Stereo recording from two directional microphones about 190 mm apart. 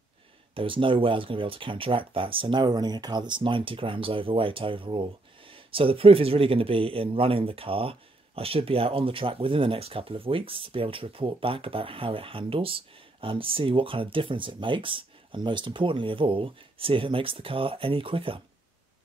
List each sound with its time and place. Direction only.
0.6 s speech: 25° right (ahead or behind)